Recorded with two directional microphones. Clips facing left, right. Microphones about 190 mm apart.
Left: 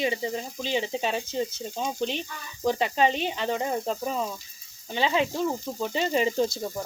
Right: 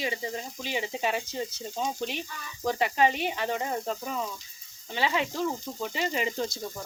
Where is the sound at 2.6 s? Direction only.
25° left (ahead or behind).